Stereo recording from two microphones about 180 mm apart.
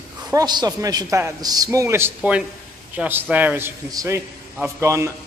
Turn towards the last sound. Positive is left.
turn(degrees=-15)  # may be behind; listen again after turning